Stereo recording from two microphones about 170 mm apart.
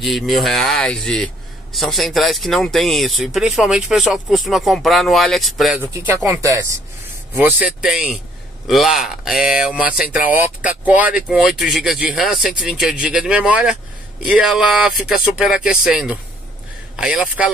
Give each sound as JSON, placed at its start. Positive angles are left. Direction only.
{"t": 0.0, "sound": "a man's voice", "side_deg": 0}
{"t": 5.8, "sound": "a man's voice", "side_deg": -15}